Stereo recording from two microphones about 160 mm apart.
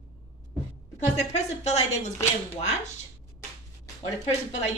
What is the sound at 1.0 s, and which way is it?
Speech, 45° left (ahead or behind).